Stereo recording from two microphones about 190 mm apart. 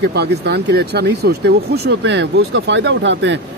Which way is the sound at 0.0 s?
60° right (ahead or behind).